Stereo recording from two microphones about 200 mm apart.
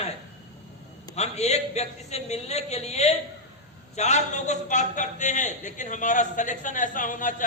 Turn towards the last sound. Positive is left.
turn(degrees=40)  # may be behind; listen again after turning